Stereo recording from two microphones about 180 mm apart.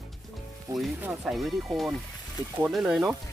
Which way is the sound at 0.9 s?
5° right (ahead or behind).